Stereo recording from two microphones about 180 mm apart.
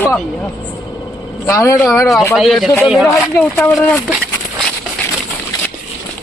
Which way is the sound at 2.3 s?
Centre (ahead or behind).